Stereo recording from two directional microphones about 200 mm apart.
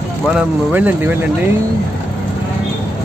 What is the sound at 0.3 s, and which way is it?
Speech, 5° right (ahead or behind).